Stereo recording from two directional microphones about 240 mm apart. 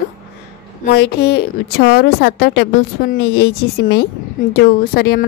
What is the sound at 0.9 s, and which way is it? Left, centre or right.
A woman's voice, left.